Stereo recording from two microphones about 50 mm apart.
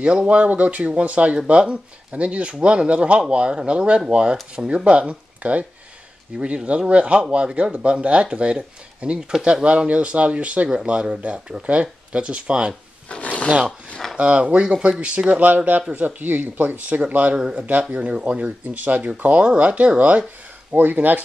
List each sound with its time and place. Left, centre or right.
0.0 s speech: centre
13.2 s rub: left
14.1 s speech: right
15.4 s speech: right
17.4 s speech: centre
17.9 s speech: right